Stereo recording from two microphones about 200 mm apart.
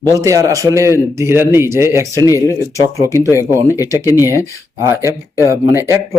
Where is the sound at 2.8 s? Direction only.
15° right (ahead or behind).